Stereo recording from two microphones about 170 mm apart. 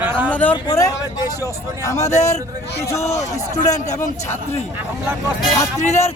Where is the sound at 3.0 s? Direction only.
40° left (ahead or behind).